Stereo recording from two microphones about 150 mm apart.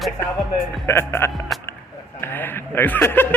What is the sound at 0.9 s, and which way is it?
Speech, 15° left (ahead or behind).